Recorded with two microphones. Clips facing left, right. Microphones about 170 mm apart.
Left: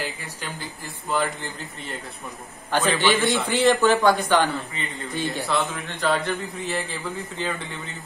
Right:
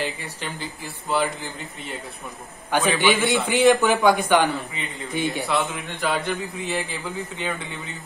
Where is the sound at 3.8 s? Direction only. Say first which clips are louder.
Even; 15° right (ahead or behind).